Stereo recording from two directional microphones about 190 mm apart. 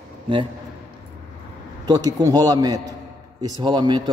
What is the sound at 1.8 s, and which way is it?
Speech, 20° right (ahead or behind).